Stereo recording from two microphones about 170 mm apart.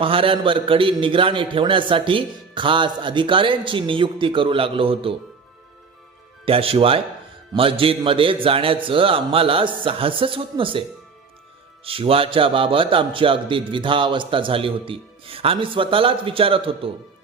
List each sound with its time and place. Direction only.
0.0 s a man's voice: 30° right (ahead or behind)
6.4 s a man's voice: 35° right (ahead or behind)
11.9 s a man's voice: 35° right (ahead or behind)